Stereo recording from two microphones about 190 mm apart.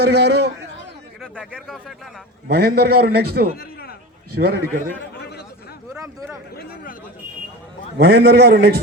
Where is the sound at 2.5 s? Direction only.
55° right (ahead or behind).